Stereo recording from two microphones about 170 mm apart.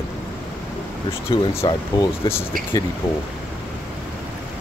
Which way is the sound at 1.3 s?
25° left (ahead or behind).